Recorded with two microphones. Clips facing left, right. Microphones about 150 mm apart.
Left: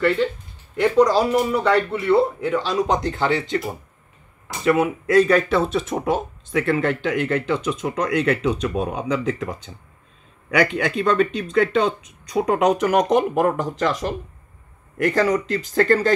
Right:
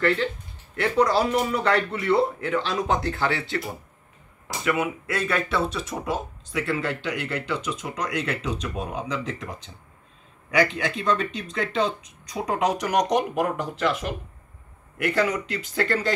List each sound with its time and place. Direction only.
0.7 s speech: 10° left (ahead or behind)
4.6 s speech: 35° left (ahead or behind)